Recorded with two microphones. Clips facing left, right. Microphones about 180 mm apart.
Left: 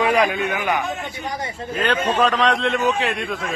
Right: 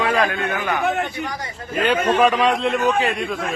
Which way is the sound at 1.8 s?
10° right (ahead or behind).